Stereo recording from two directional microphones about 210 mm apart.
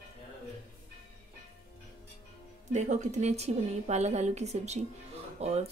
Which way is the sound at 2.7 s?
35° right (ahead or behind).